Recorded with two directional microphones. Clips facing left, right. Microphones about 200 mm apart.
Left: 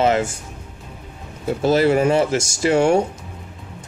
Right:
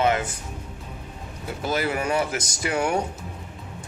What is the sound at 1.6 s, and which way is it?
Speech, 30° left (ahead or behind).